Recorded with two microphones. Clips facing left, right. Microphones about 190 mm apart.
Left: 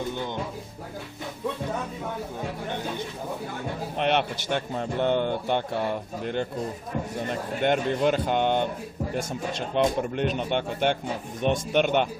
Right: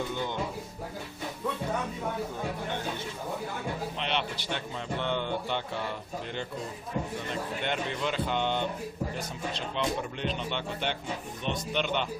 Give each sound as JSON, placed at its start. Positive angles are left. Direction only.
{"t": 3.9, "sound": "speech", "side_deg": 55}